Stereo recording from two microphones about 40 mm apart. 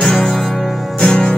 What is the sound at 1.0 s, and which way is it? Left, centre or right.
Music, left.